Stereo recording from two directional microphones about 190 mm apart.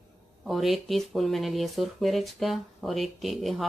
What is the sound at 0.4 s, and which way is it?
Speech, centre (ahead or behind).